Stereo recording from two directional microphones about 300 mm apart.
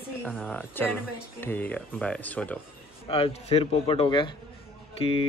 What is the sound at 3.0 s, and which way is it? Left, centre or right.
Speech, centre.